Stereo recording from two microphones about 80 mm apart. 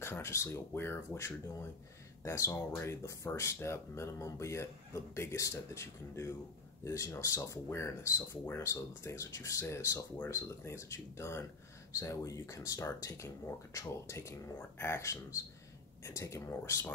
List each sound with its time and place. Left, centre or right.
0.0 s speech: left